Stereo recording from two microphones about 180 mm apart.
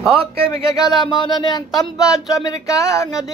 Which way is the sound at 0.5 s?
20° left (ahead or behind).